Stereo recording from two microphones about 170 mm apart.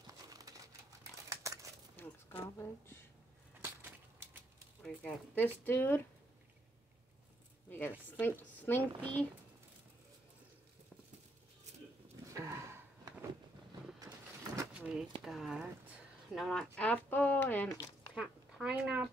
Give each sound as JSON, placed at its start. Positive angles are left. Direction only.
{"t": 0.0, "sound": "crumpling", "side_deg": -20}
{"t": 2.4, "sound": "speech", "side_deg": 15}
{"t": 4.8, "sound": "speech", "side_deg": 10}
{"t": 8.2, "sound": "speech", "side_deg": 10}
{"t": 12.3, "sound": "a sound", "side_deg": -15}
{"t": 13.9, "sound": "vehicle", "side_deg": -20}
{"t": 14.7, "sound": "a sound", "side_deg": -5}
{"t": 15.2, "sound": "speech", "side_deg": 0}
{"t": 18.1, "sound": "speech", "side_deg": -5}